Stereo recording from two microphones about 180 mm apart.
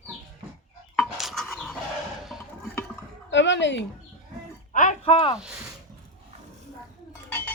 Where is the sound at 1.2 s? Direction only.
Centre (ahead or behind).